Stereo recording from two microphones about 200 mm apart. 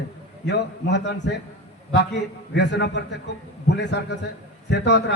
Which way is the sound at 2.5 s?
60° left (ahead or behind).